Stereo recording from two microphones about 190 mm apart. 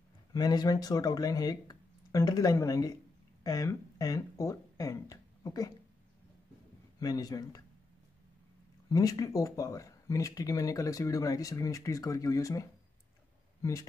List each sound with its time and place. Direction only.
0.3 s speech: 20° left (ahead or behind)
7.0 s speech: 20° left (ahead or behind)
8.8 s speech: 20° left (ahead or behind)